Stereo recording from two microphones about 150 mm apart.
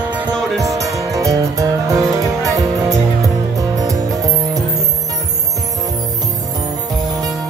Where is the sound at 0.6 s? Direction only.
20° right (ahead or behind).